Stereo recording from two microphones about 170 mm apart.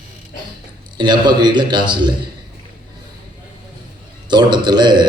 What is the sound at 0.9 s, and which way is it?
A man's voice, 25° right (ahead or behind).